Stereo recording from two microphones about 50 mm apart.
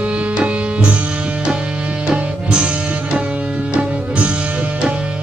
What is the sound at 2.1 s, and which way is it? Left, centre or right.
Music, centre.